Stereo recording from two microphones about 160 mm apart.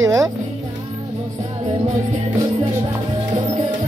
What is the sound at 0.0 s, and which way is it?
Speech, 20° right (ahead or behind).